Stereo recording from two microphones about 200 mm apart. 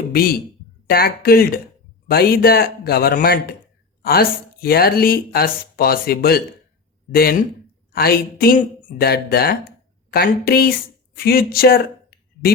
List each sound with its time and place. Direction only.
0.1 s speech: 50° left (ahead or behind)